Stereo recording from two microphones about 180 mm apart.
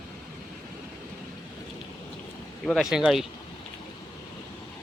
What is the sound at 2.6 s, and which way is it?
Speech, 5° left (ahead or behind).